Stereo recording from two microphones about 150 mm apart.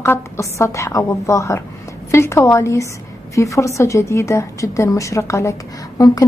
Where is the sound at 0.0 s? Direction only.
20° left (ahead or behind).